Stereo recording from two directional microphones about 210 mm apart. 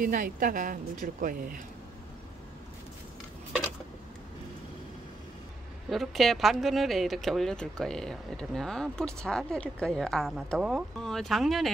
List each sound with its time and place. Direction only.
0.0 s speech: 40° right (ahead or behind)
5.9 s speech: centre (ahead or behind)